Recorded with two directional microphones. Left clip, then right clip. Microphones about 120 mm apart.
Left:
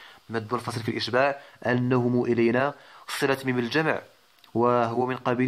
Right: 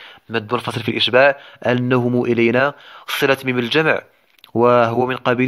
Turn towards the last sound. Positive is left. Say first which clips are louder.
# right 8 dB
turn(degrees=-30)  # may be behind; listen again after turning